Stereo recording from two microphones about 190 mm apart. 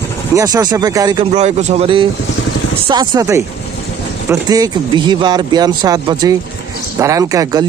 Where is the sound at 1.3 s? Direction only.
35° right (ahead or behind).